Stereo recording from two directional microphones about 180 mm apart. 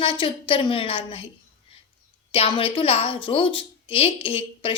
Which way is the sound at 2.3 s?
30° left (ahead or behind).